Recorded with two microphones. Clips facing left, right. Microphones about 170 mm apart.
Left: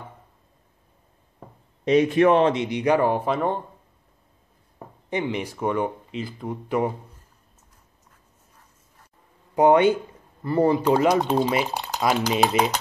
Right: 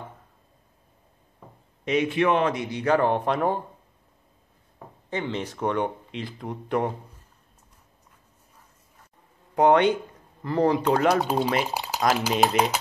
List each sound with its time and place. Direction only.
1.9 s speech: 40° left (ahead or behind); by 3.6 s 5° right (ahead or behind)
4.7 s speech: 15° left (ahead or behind)
9.6 s speech: 5° left (ahead or behind)